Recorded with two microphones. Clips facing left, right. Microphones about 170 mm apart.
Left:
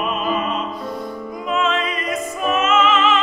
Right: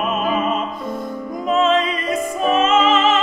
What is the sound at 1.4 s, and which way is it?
Music, 35° right (ahead or behind).